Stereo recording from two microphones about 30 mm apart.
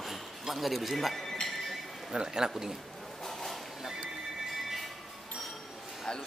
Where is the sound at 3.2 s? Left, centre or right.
Centre.